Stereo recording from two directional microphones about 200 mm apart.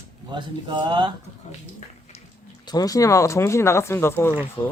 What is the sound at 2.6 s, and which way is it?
Speech, 20° left (ahead or behind).